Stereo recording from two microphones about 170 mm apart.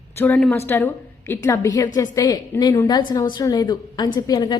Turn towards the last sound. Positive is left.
turn(degrees=25)  # may be behind; listen again after turning